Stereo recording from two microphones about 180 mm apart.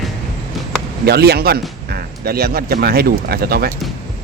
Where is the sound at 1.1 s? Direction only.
65° right (ahead or behind).